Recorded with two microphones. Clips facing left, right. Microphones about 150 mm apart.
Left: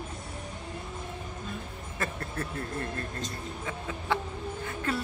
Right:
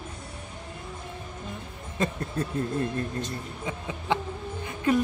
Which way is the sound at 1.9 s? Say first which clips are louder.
Right 6 dB; 20° right (ahead or behind).